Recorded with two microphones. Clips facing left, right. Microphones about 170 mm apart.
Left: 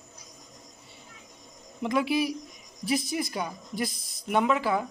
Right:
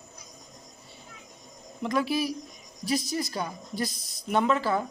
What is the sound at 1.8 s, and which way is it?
A woman's voice, 20° left (ahead or behind).